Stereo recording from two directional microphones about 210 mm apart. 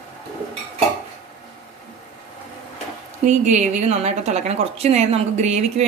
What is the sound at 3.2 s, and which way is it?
A woman's voice, 35° right (ahead or behind).